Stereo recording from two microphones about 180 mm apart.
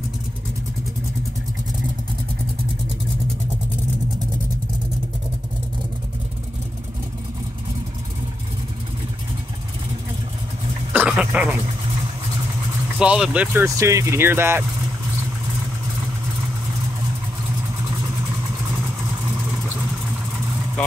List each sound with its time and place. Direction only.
10.9 s dog: 5° right (ahead or behind)
13.0 s speech: 5° right (ahead or behind)